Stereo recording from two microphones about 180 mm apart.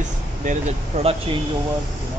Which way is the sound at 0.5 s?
40° right (ahead or behind).